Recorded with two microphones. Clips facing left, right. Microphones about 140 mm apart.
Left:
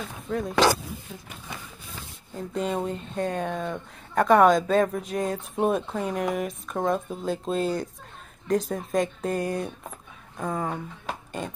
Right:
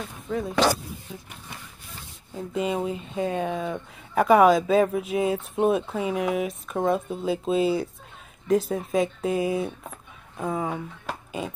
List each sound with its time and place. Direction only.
0.3 s speech: centre (ahead or behind)
2.3 s speech: 5° right (ahead or behind)